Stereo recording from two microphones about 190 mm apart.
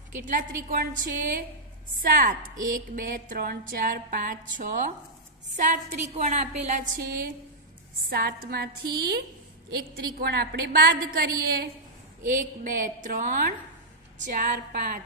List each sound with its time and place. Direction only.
0.7 s music: 45° right (ahead or behind)
5.6 s a woman's voice: 40° right (ahead or behind)
8.1 s music: 50° right (ahead or behind)